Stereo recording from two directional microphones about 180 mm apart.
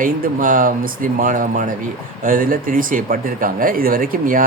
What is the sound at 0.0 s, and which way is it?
Speech, 50° right (ahead or behind).